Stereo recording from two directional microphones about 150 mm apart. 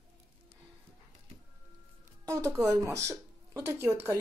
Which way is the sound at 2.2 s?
20° right (ahead or behind).